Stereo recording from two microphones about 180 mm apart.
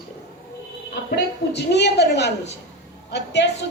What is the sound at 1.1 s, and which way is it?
A woman's voice, 70° left (ahead or behind).